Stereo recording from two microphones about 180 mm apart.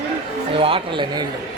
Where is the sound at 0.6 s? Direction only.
30° right (ahead or behind).